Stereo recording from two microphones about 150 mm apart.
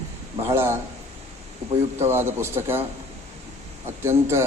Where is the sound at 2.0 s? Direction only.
15° right (ahead or behind).